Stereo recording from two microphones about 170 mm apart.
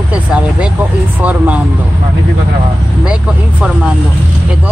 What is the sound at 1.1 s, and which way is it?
Speech, 10° right (ahead or behind).